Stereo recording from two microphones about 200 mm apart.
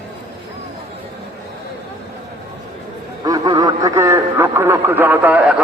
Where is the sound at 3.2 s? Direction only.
20° right (ahead or behind).